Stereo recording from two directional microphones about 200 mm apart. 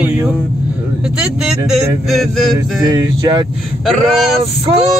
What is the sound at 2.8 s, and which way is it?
Speech, 20° right (ahead or behind).